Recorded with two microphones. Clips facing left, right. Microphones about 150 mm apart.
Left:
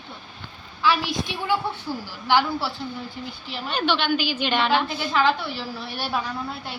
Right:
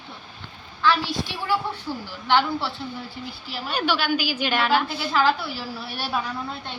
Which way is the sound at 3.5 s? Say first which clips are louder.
Left 1 dB; 5° right (ahead or behind).